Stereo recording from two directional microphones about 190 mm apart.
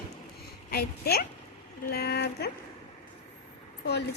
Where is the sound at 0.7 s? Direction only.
55° left (ahead or behind).